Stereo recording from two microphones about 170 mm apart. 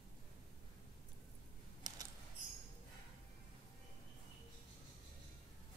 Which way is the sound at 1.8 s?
25° right (ahead or behind).